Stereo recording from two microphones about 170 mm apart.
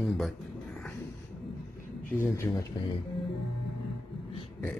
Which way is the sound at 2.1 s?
15° left (ahead or behind).